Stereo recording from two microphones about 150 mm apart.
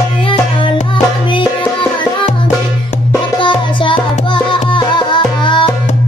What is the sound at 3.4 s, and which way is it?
Music, 35° left (ahead or behind).